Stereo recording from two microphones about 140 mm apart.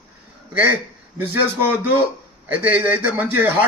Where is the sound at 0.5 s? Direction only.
10° right (ahead or behind).